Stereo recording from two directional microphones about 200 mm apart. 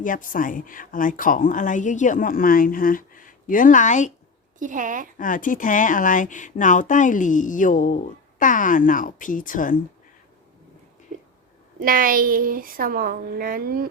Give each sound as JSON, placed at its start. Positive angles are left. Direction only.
{"t": 0.0, "sound": "speech", "side_deg": 40}
{"t": 4.6, "sound": "a woman's voice", "side_deg": -40}
{"t": 5.1, "sound": "speech", "side_deg": 40}
{"t": 11.8, "sound": "a woman's voice", "side_deg": -45}